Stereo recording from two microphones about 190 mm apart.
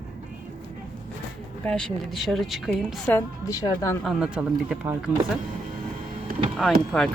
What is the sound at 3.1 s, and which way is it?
Speech, 20° left (ahead or behind).